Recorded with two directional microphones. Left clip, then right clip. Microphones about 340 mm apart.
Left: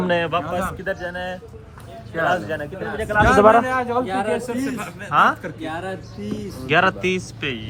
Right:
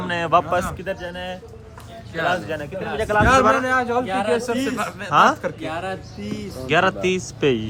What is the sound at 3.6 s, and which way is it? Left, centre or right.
A man's voice, right.